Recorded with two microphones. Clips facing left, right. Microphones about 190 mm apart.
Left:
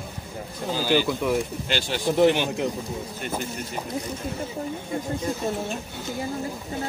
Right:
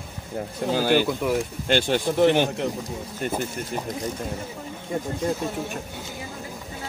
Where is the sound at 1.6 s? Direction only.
50° right (ahead or behind).